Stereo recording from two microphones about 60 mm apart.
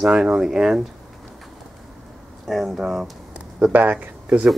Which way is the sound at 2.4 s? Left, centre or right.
Centre.